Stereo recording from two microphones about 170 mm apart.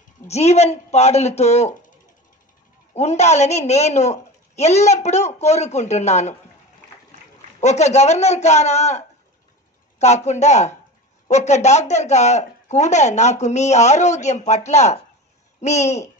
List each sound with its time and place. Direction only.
0.3 s speech: 40° left (ahead or behind)
2.9 s speech: 40° left (ahead or behind)
7.6 s speech: 40° left (ahead or behind)